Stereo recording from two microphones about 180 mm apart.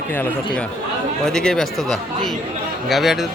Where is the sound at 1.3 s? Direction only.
5° left (ahead or behind).